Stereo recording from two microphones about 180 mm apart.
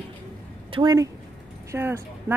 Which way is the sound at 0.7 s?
25° right (ahead or behind).